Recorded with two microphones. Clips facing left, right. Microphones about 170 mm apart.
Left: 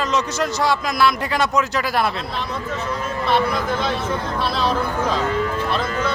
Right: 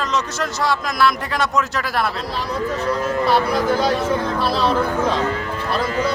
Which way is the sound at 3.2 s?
35° right (ahead or behind).